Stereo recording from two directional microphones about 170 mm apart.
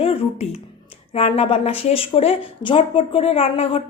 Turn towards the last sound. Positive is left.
turn(degrees=35)  # may be behind; listen again after turning